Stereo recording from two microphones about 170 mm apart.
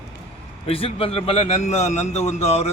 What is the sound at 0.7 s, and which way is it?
A man's voice, 35° left (ahead or behind).